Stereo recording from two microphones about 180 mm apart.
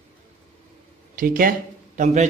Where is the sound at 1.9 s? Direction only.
40° right (ahead or behind).